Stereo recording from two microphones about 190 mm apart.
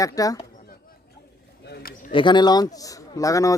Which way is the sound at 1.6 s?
55° left (ahead or behind).